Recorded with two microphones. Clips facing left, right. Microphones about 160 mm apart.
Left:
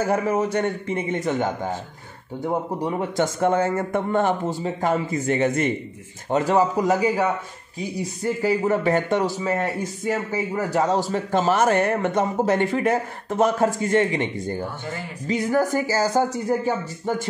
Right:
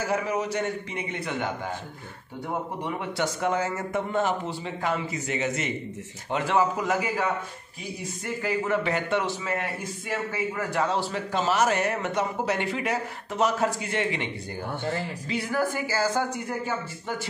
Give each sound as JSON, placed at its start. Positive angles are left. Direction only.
{"t": 0.0, "sound": "a man's voice", "side_deg": 50}
{"t": 2.8, "sound": "a man's voice", "side_deg": 45}
{"t": 6.3, "sound": "a man's voice", "side_deg": 40}